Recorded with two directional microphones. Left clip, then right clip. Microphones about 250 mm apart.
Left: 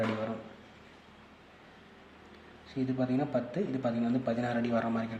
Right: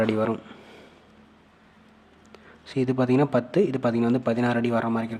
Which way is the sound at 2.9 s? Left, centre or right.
Right.